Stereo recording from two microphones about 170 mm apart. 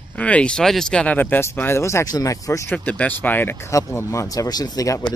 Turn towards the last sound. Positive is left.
turn(degrees=20)  # may be behind; listen again after turning